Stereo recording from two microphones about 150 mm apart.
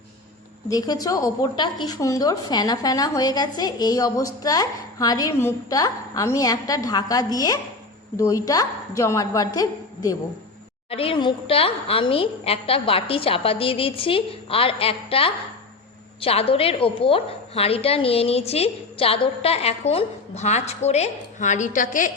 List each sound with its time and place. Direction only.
0.7 s a woman's voice: 25° left (ahead or behind)
10.8 s a woman's voice: 40° left (ahead or behind); by 22.1 s 60° left (ahead or behind)